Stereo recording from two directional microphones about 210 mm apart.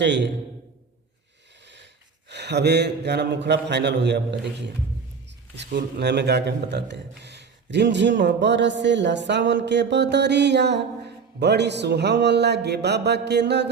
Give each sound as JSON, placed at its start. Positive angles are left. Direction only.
{"t": 0.0, "sound": "speech", "side_deg": -55}
{"t": 2.3, "sound": "speech", "side_deg": -55}
{"t": 5.5, "sound": "speech", "side_deg": -55}